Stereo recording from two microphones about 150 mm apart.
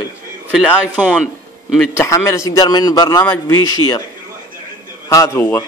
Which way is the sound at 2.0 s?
20° left (ahead or behind).